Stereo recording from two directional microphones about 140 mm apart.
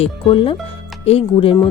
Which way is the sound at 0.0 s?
40° left (ahead or behind).